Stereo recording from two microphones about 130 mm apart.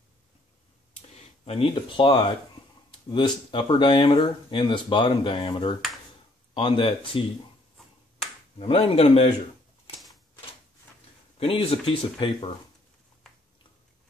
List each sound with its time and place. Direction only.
1.4 s speech: 45° left (ahead or behind)
8.5 s speech: 45° left (ahead or behind)
9.9 s typewriter: centre (ahead or behind)
11.3 s speech: 50° left (ahead or behind)